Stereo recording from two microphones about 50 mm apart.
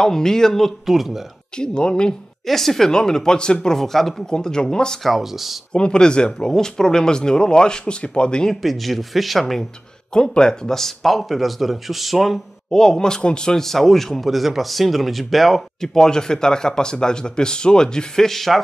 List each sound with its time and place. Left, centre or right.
0.0 s a man's voice: centre
0.8 s speech: centre
1.6 s a man's voice: centre
2.4 s a man's voice: centre
5.0 s speech: centre
5.7 s a man's voice: centre
8.6 s speech: centre
10.1 s speech: centre
12.7 s a man's voice: centre